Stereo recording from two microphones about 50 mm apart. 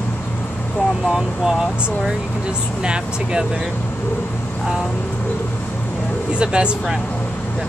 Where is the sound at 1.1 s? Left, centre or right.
Centre.